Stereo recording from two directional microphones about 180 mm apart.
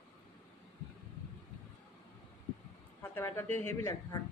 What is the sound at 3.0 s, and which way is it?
A woman's voice, 15° left (ahead or behind).